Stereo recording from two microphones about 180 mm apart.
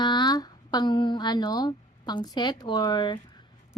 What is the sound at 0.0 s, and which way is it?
A woman's voice, 25° left (ahead or behind).